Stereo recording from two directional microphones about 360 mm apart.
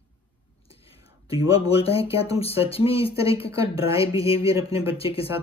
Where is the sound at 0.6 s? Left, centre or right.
Centre.